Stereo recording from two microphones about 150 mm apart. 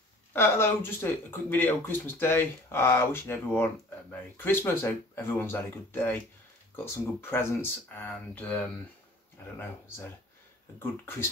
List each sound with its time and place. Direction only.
0.3 s speech: 15° left (ahead or behind)
9.6 s speech: 15° left (ahead or behind)